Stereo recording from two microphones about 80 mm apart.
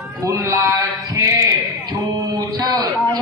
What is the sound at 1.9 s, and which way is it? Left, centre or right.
Music, right.